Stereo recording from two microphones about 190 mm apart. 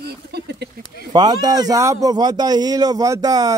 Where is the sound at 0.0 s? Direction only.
55° right (ahead or behind).